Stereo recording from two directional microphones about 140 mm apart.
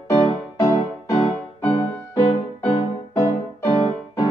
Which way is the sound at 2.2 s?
45° left (ahead or behind).